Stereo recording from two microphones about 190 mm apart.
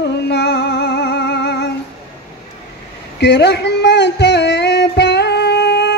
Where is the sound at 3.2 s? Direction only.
65° left (ahead or behind).